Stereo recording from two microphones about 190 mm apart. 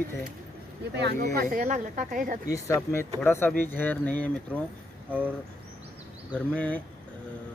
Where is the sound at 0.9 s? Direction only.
60° right (ahead or behind).